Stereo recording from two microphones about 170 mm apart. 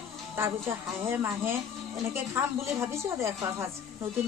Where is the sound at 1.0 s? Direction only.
15° right (ahead or behind).